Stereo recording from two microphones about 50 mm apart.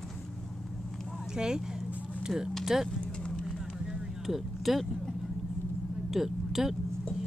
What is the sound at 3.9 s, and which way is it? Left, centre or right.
Vehicle, centre.